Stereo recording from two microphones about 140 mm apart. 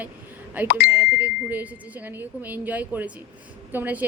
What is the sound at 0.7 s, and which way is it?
Speech, 90° left.